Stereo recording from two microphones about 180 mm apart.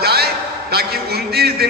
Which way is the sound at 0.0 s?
60° right (ahead or behind).